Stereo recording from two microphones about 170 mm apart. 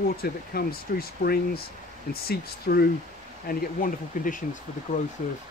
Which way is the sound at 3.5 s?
55° left (ahead or behind).